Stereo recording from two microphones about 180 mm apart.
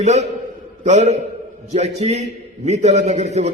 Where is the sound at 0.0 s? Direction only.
40° right (ahead or behind).